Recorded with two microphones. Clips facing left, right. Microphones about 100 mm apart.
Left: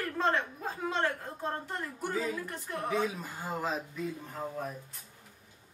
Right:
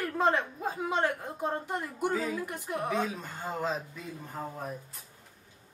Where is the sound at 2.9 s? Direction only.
5° left (ahead or behind).